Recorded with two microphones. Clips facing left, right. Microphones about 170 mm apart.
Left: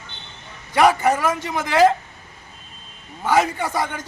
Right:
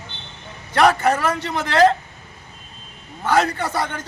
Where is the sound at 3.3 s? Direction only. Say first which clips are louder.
Even; 10° left (ahead or behind).